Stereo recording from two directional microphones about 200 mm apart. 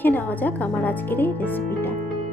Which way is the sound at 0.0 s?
10° left (ahead or behind).